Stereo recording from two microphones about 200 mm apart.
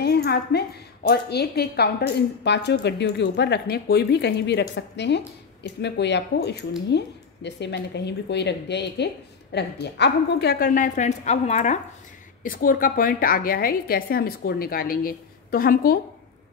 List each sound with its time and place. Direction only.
0.0 s a woman's voice: 55° left (ahead or behind)